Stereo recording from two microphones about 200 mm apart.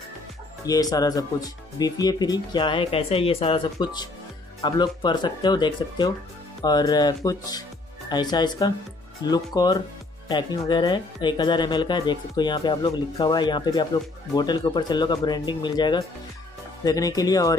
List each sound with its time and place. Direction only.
0.7 s speech: 20° left (ahead or behind)